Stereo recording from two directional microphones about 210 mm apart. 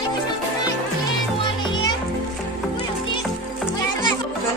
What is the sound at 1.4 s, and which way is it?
Music, 20° left (ahead or behind).